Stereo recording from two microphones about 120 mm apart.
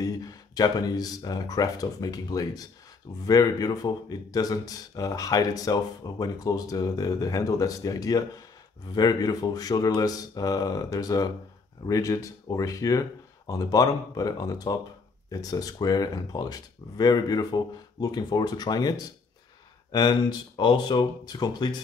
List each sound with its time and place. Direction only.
0.0 s speech: 30° left (ahead or behind)